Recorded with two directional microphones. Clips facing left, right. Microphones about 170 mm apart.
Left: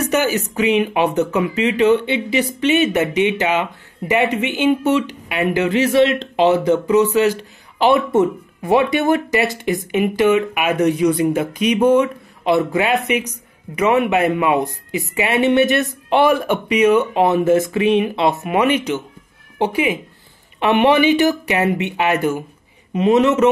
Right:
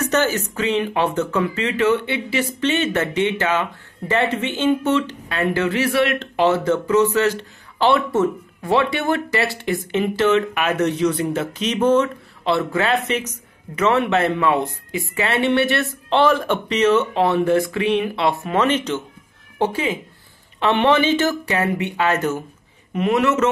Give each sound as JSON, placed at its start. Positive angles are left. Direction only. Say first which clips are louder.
{"t": 0.0, "sound": "a man's voice", "louder": "left 2 dB", "side_deg": 10}